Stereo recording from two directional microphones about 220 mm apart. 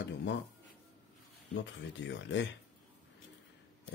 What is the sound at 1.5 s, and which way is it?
Speech, 55° left (ahead or behind).